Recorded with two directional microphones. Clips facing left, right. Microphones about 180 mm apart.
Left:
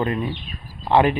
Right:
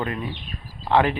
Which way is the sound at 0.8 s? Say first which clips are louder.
Left 3 dB; 15° left (ahead or behind).